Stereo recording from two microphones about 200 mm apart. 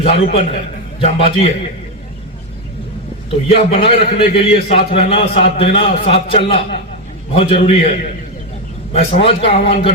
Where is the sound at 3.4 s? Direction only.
30° left (ahead or behind).